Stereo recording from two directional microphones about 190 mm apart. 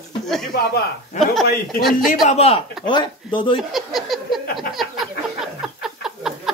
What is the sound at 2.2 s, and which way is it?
A man's voice, 30° left (ahead or behind).